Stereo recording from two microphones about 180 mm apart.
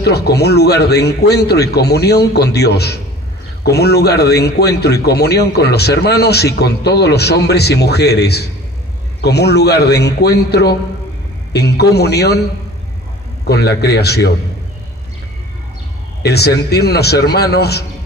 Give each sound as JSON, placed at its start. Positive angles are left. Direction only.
{"t": 0.0, "sound": "a man's voice", "side_deg": 65}
{"t": 13.5, "sound": "a man's voice", "side_deg": 65}
{"t": 16.2, "sound": "a man's voice", "side_deg": 65}